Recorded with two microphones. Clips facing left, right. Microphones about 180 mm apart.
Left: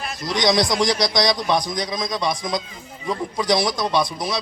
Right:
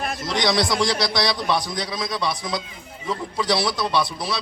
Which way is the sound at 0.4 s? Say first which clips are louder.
Left 3 dB; 15° left (ahead or behind).